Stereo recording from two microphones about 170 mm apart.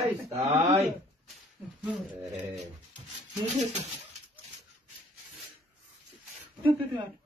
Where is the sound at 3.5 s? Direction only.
45° right (ahead or behind).